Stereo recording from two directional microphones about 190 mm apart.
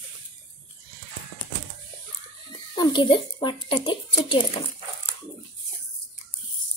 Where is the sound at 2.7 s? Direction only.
25° left (ahead or behind).